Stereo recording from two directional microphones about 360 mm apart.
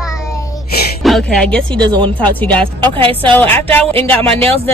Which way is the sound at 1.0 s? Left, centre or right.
Centre.